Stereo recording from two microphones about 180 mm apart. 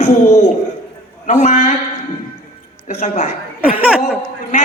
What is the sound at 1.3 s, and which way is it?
Speech, 40° left (ahead or behind).